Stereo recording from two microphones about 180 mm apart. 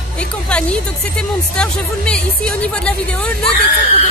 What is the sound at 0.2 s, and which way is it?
Speech, 5° left (ahead or behind).